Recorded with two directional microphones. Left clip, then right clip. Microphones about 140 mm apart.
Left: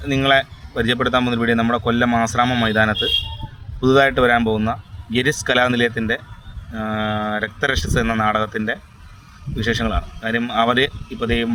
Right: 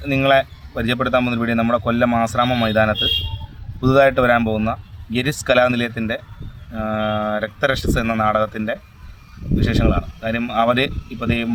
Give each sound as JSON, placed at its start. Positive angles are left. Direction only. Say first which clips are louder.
{"t": 0.0, "sound": "speech", "louder": "right 1 dB", "side_deg": -15}